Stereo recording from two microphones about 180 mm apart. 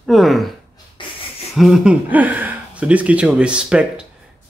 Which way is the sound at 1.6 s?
Centre (ahead or behind).